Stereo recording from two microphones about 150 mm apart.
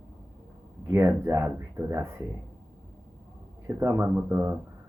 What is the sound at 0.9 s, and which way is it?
Speech, 15° right (ahead or behind).